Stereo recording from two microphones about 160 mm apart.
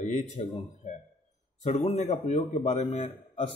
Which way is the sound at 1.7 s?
40° left (ahead or behind).